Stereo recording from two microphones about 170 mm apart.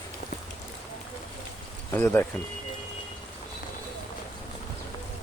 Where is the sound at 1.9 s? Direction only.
15° left (ahead or behind).